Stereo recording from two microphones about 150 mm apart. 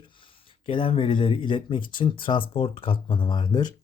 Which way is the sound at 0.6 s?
35° left (ahead or behind).